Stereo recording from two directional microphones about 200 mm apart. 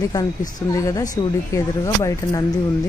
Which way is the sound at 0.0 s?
20° left (ahead or behind).